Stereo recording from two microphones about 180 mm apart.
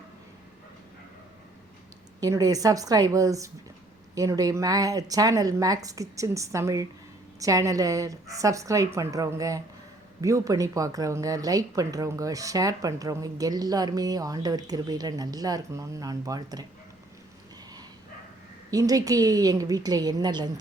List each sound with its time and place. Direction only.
2.2 s a woman's voice: 20° right (ahead or behind)
18.7 s a woman's voice: 20° right (ahead or behind)